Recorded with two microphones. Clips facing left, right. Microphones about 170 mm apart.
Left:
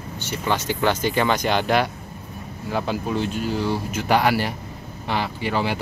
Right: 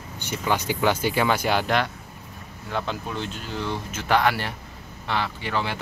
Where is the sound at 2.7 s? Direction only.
10° left (ahead or behind).